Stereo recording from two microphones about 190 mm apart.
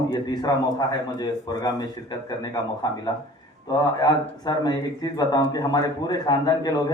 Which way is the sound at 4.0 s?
20° left (ahead or behind).